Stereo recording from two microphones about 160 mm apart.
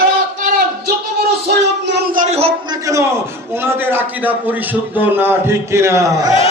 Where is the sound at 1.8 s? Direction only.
75° right (ahead or behind).